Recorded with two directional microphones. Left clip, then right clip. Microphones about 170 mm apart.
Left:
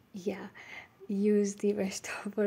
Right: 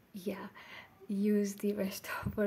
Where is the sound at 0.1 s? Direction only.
15° left (ahead or behind).